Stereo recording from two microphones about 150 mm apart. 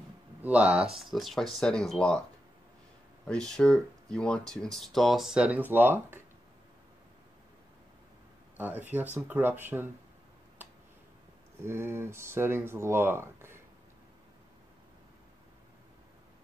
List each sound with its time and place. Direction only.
0.4 s speech: 10° right (ahead or behind)
3.3 s speech: 5° left (ahead or behind); by 6.1 s 15° right (ahead or behind)
8.5 s speech: 10° right (ahead or behind)
11.6 s speech: 15° right (ahead or behind)